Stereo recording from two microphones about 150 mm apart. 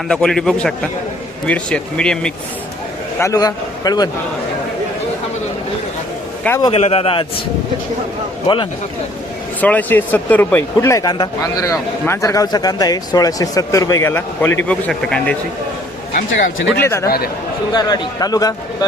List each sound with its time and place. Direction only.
0.1 s a man's voice: 5° left (ahead or behind)
3.2 s speech: 20° left (ahead or behind)
6.6 s a man's voice: 35° left (ahead or behind)
8.5 s a man's voice: 35° left (ahead or behind)
9.6 s speech: 10° left (ahead or behind)
16.1 s speech: 85° left
16.8 s speech: 20° left (ahead or behind)